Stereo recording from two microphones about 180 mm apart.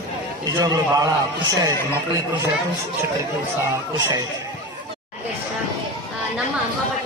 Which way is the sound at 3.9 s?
20° right (ahead or behind).